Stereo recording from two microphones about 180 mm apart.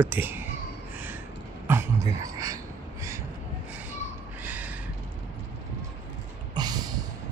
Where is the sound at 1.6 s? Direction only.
15° right (ahead or behind).